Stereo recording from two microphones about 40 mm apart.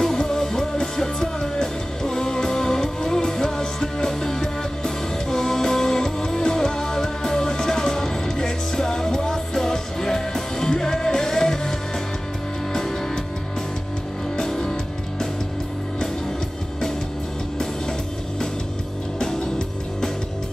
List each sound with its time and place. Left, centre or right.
0.2 s music: centre
12.7 s music: centre
14.3 s music: centre
19.1 s music: left